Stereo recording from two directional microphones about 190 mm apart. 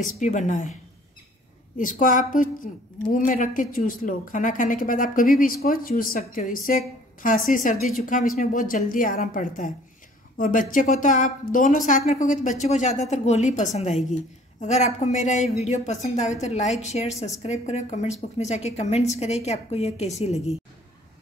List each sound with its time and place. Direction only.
0.2 s a woman's voice: 40° left (ahead or behind)
1.8 s a woman's voice: 45° left (ahead or behind)